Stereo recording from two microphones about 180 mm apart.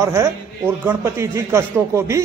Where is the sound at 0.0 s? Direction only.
15° right (ahead or behind).